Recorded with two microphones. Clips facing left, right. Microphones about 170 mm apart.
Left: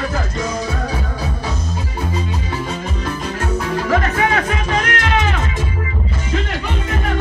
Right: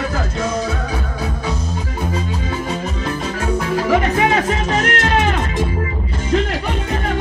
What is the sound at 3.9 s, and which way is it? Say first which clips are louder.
Music: right 2 dB; 20° right (ahead or behind).